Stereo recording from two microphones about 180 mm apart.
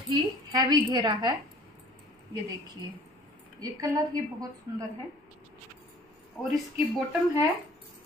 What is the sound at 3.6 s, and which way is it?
Speech, 20° right (ahead or behind).